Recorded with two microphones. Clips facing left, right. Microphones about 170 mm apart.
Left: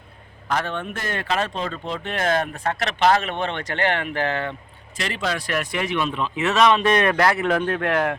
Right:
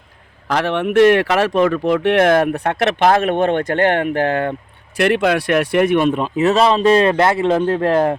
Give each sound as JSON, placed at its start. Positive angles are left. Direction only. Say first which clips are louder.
{"t": 0.4, "sound": "speech", "louder": "right 8 dB", "side_deg": -85}